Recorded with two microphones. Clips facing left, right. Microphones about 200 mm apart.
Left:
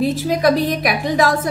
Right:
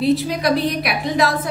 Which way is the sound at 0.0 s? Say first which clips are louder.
Left 2 dB; 45° left (ahead or behind).